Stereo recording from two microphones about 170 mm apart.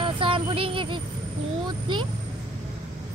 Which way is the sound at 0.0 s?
30° right (ahead or behind).